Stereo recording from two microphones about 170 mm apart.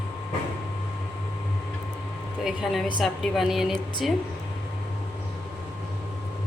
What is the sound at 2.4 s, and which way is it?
A woman's voice, centre (ahead or behind).